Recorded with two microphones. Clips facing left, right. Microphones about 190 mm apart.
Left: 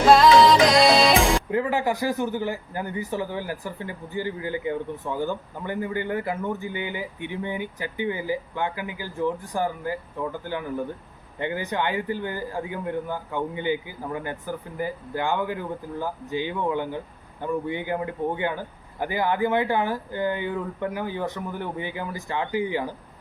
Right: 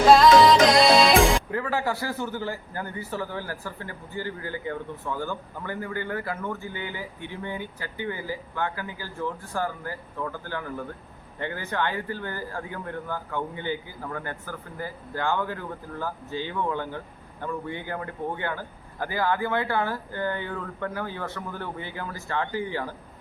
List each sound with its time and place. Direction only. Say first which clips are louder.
0.2 s music: even; centre (ahead or behind)
1.5 s a man's voice: left 4 dB; 20° left (ahead or behind)